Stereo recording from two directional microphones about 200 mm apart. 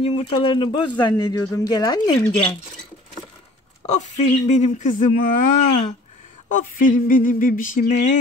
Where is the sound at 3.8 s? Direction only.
35° left (ahead or behind).